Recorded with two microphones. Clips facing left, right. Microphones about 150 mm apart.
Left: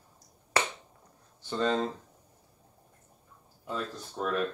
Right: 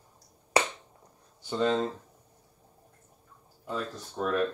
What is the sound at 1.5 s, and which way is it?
Speech, 5° right (ahead or behind).